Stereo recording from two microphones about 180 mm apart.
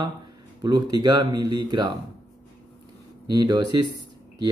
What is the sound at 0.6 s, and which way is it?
Speech, 20° right (ahead or behind).